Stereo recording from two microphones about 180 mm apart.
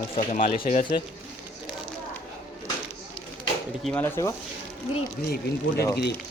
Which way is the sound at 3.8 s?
5° left (ahead or behind).